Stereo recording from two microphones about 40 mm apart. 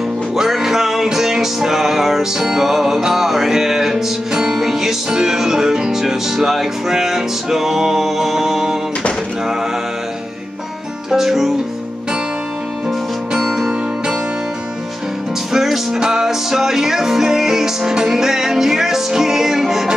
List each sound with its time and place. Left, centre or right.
0.4 s music: centre
11.1 s music: centre
13.3 s music: centre
15.5 s music: centre